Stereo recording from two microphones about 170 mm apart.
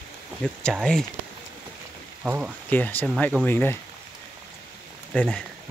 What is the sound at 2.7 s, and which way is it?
Speech, 10° left (ahead or behind).